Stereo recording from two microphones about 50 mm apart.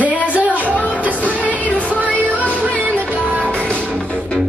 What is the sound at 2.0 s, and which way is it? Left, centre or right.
Music, right.